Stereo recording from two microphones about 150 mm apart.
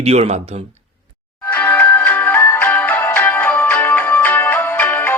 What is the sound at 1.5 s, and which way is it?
Music, 10° left (ahead or behind).